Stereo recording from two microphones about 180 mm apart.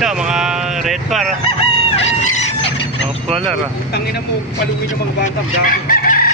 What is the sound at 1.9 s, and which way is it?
Crowing, 40° left (ahead or behind).